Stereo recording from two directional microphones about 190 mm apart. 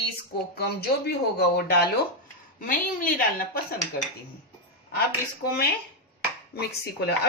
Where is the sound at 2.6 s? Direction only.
45° left (ahead or behind).